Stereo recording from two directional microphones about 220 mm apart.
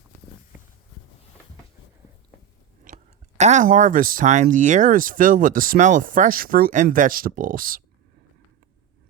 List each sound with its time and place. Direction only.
2.8 s speech: 30° right (ahead or behind)